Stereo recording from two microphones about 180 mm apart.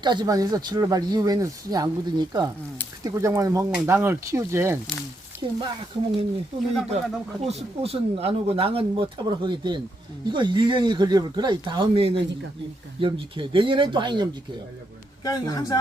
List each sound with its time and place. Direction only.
0.0 s speech: 25° right (ahead or behind)
5.4 s speech: 25° right (ahead or behind)
7.4 s speech: 35° right (ahead or behind)
15.2 s a man's voice: 20° left (ahead or behind)